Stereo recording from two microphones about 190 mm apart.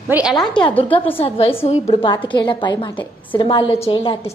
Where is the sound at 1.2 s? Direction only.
30° left (ahead or behind).